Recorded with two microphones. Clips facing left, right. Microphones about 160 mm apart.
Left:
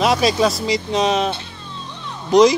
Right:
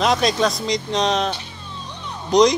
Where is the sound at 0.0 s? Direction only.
5° left (ahead or behind).